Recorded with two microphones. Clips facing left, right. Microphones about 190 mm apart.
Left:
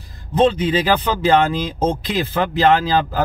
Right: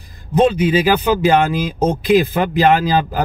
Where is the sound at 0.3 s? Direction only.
10° right (ahead or behind).